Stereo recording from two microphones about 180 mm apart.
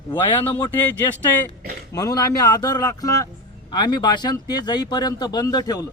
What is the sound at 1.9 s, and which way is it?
Speech, 20° left (ahead or behind).